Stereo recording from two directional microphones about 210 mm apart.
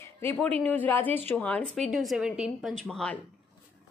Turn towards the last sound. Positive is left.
turn(degrees=5)  # may be behind; listen again after turning